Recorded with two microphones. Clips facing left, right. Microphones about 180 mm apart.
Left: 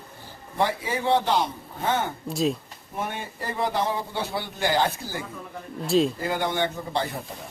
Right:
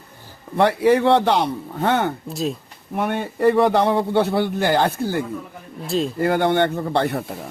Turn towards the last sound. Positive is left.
turn(degrees=-65)  # may be behind; listen again after turning